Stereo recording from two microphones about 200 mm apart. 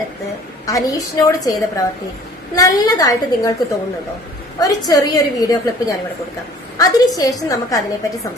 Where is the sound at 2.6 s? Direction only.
15° left (ahead or behind).